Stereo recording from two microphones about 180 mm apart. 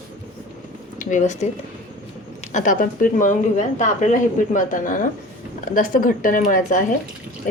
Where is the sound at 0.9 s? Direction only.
45° left (ahead or behind).